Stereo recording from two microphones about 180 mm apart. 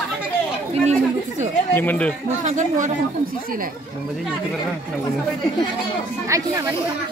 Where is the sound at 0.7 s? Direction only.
40° right (ahead or behind).